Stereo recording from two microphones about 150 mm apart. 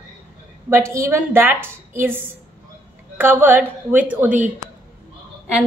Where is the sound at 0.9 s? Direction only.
20° right (ahead or behind).